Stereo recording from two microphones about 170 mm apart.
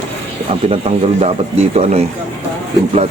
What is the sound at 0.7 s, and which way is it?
Speech, 40° right (ahead or behind).